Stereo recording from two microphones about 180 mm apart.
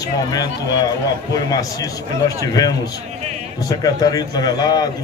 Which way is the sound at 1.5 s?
20° left (ahead or behind).